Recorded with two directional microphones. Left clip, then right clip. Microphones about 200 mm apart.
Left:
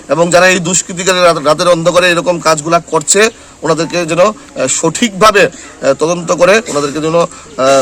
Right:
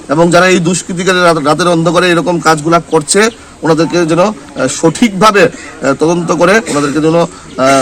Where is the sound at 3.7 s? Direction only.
15° left (ahead or behind).